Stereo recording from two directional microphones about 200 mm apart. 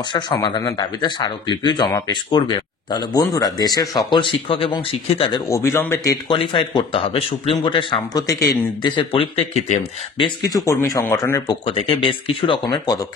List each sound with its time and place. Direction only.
0.1 s speech: 20° left (ahead or behind)
5.5 s speech: 15° left (ahead or behind)
6.2 s speech: 25° left (ahead or behind)